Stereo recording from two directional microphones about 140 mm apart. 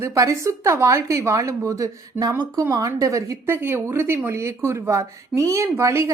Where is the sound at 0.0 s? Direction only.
20° right (ahead or behind).